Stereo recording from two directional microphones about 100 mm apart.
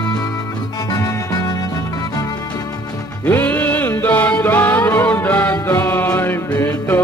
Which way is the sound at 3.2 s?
15° left (ahead or behind).